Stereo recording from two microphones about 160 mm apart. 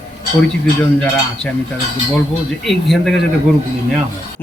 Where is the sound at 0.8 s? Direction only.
5° left (ahead or behind).